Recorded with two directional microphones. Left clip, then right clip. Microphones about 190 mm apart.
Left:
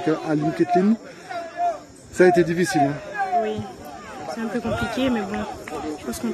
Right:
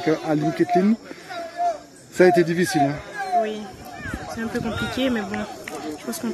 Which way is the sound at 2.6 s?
35° right (ahead or behind).